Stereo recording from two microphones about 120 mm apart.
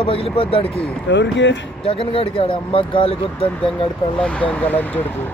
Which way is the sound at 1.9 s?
50° left (ahead or behind).